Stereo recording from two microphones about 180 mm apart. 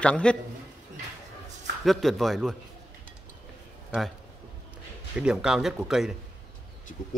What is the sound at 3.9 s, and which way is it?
Speech, centre (ahead or behind).